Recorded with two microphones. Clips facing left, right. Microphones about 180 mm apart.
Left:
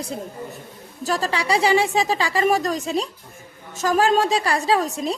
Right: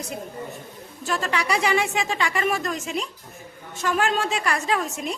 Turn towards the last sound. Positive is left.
turn(degrees=35)  # may be behind; listen again after turning